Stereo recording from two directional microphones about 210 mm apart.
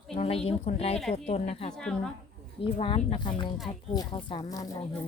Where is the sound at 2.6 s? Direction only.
25° left (ahead or behind).